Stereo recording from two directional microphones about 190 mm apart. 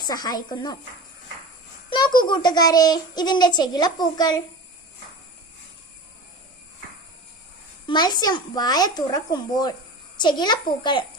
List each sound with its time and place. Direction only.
0.0 s a child's voice: 20° left (ahead or behind)
1.9 s a child's voice: 25° left (ahead or behind)
7.9 s a child's voice: 20° left (ahead or behind)